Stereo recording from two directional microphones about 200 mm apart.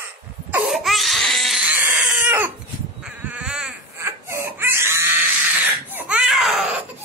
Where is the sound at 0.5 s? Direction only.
Centre (ahead or behind).